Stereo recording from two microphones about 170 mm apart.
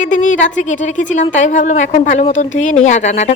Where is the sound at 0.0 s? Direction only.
45° left (ahead or behind).